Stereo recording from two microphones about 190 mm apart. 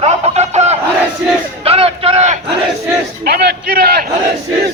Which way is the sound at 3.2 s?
55° right (ahead or behind).